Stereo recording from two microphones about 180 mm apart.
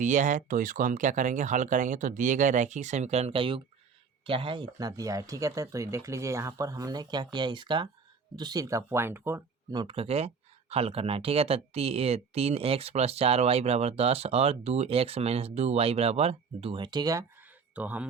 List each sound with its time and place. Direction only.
0.0 s speech: 45° right (ahead or behind); by 9.8 s 15° right (ahead or behind)
9.8 s speech: 30° right (ahead or behind)
17.7 s speech: 10° right (ahead or behind)